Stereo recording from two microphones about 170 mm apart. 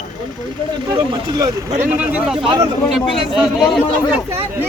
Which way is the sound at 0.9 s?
30° right (ahead or behind).